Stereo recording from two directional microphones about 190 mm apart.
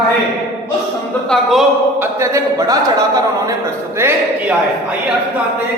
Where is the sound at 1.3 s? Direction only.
Centre (ahead or behind).